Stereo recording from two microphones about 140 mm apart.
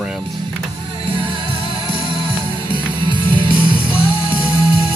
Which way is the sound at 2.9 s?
35° right (ahead or behind).